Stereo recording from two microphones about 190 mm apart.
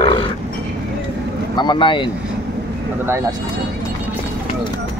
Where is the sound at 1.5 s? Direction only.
25° left (ahead or behind).